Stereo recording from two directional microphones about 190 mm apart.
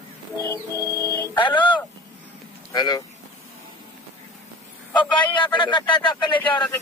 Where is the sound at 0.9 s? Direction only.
20° left (ahead or behind).